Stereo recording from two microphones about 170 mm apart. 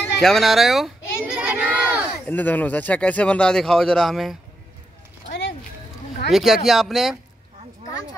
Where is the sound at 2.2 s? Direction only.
10° left (ahead or behind).